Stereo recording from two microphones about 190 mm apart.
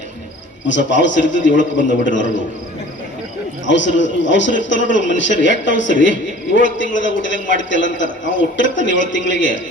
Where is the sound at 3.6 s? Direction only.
75° left (ahead or behind).